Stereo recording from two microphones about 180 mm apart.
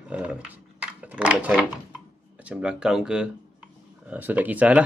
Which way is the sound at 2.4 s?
5° right (ahead or behind).